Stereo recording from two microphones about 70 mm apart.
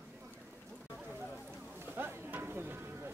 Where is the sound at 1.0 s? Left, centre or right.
Right.